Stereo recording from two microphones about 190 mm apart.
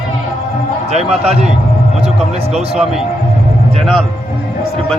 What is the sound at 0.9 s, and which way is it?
Speech, 35° right (ahead or behind).